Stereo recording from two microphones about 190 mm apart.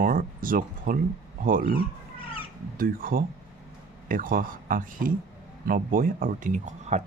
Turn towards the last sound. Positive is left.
turn(degrees=-40)  # may be behind; listen again after turning